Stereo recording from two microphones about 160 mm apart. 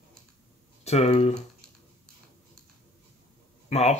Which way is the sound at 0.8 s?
40° left (ahead or behind).